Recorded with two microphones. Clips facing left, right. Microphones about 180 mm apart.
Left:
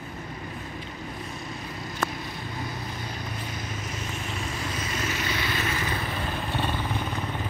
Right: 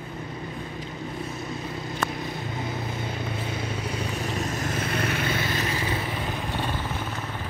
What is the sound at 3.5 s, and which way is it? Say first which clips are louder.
Vehicle: right 5 dB; 30° right (ahead or behind).